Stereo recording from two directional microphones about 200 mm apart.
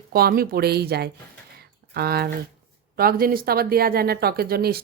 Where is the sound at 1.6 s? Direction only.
50° right (ahead or behind).